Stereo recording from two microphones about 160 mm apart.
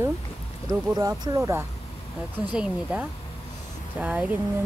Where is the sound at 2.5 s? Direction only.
10° right (ahead or behind).